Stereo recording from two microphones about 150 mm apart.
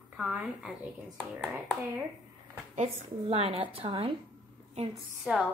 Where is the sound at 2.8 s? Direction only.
40° right (ahead or behind).